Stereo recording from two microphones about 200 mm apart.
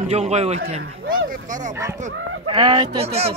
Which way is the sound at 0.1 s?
30° right (ahead or behind).